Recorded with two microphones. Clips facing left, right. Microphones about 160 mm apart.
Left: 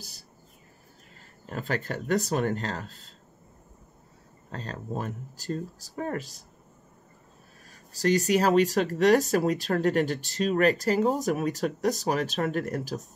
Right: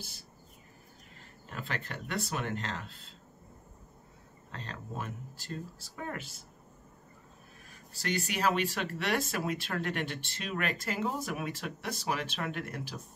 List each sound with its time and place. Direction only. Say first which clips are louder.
1.5 s speech: left 8 dB; 40° left (ahead or behind)
4.5 s speech: left 7 dB; 40° left (ahead or behind)
7.7 s speech: left 10 dB; 40° left (ahead or behind)